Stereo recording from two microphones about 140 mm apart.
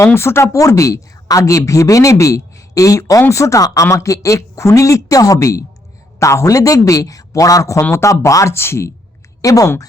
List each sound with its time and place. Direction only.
0.0 s a woman's voice: 15° left (ahead or behind)